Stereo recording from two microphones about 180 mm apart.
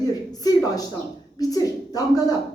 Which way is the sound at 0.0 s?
20° left (ahead or behind).